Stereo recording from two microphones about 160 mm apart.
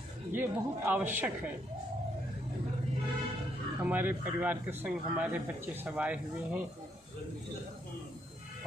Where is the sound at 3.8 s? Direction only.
10° right (ahead or behind).